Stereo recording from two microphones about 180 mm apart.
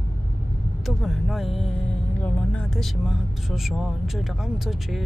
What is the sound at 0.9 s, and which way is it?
Speech, centre (ahead or behind).